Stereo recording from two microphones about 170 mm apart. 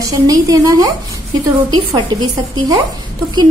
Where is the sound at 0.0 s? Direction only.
20° right (ahead or behind).